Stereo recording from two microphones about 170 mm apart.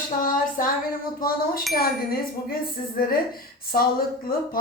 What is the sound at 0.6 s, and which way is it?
Speech, 55° left (ahead or behind).